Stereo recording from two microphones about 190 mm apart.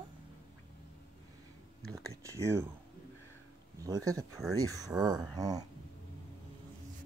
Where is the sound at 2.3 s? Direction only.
15° right (ahead or behind).